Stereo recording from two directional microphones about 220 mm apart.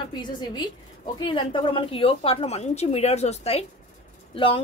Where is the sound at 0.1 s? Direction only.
20° left (ahead or behind).